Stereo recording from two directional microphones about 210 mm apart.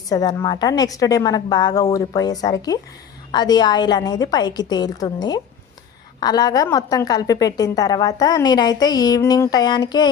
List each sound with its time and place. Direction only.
0.1 s a woman's voice: 20° left (ahead or behind)